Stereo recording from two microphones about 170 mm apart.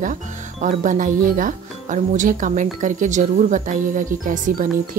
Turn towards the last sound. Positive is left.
turn(degrees=-50)  # may be behind; listen again after turning